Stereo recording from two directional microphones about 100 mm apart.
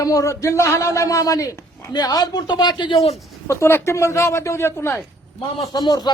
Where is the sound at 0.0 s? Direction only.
35° left (ahead or behind).